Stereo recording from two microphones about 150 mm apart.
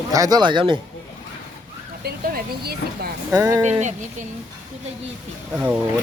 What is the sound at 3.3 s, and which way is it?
Speech, 20° right (ahead or behind).